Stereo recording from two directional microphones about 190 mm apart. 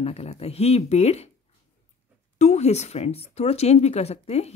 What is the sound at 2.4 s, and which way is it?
A woman's voice, 35° left (ahead or behind).